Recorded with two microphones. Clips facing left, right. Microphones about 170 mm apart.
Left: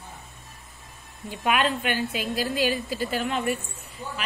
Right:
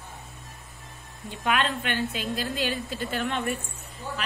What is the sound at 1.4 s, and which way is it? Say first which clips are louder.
A woman's voice: left 2 dB; 10° left (ahead or behind).